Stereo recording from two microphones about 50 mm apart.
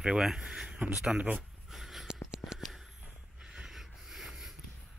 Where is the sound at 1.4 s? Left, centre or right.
Centre.